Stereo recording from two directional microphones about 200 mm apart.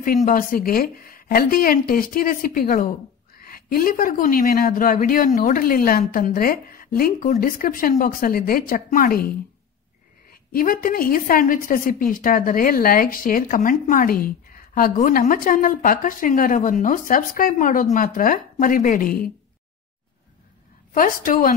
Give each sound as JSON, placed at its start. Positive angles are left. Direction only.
{"t": 0.0, "sound": "a woman's voice", "side_deg": 45}
{"t": 10.5, "sound": "a woman's voice", "side_deg": 45}
{"t": 20.9, "sound": "a woman's voice", "side_deg": 45}